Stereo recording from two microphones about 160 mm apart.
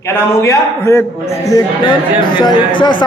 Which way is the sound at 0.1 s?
15° left (ahead or behind).